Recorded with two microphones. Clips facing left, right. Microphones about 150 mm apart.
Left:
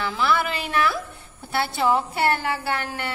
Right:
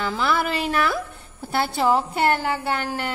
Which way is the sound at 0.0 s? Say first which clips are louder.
Even; 40° right (ahead or behind).